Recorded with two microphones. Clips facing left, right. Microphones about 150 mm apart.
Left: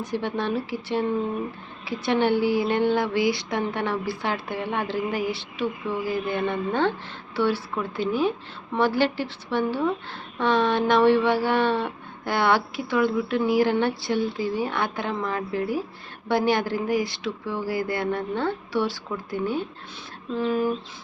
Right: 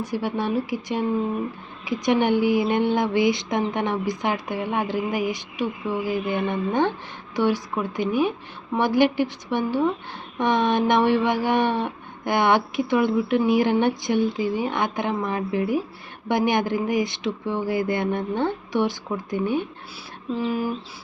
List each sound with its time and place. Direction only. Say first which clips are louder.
0.0 s speech: right 1 dB; 10° right (ahead or behind)